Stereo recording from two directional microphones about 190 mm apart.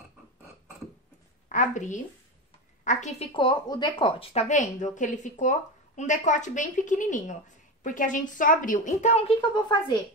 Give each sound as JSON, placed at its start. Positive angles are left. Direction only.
{"t": 1.5, "sound": "a woman's voice", "side_deg": 40}
{"t": 3.3, "sound": "a woman's voice", "side_deg": 25}
{"t": 9.4, "sound": "a woman's voice", "side_deg": 25}